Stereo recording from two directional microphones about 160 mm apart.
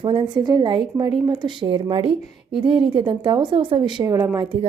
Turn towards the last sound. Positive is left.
turn(degrees=-35)  # may be behind; listen again after turning